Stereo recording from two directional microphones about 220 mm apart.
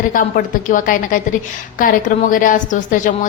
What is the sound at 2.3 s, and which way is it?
Speech, 40° left (ahead or behind).